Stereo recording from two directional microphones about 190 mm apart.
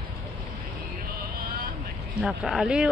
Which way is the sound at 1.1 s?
50° right (ahead or behind).